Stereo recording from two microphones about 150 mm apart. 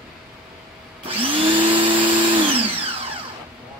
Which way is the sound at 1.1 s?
35° right (ahead or behind).